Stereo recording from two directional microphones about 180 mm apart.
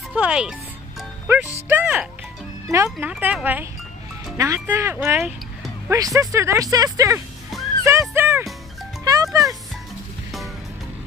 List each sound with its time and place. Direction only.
0.1 s speech: 5° right (ahead or behind)
7.8 s music: 15° right (ahead or behind)